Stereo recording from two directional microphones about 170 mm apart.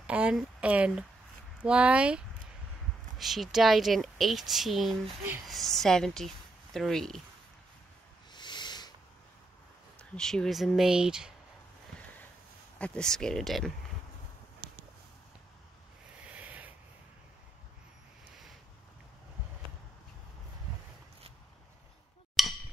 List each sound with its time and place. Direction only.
0.0 s a woman's voice: 5° right (ahead or behind)
8.3 s a sound: 25° left (ahead or behind)
9.9 s a woman's voice: 5° left (ahead or behind)
12.7 s a woman's voice: 5° left (ahead or behind)
16.3 s rub: 10° right (ahead or behind)
22.3 s a sound: centre (ahead or behind)